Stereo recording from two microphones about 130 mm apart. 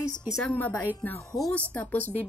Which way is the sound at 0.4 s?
10° left (ahead or behind).